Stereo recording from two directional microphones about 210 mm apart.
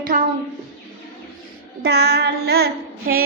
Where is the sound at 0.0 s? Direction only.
40° right (ahead or behind).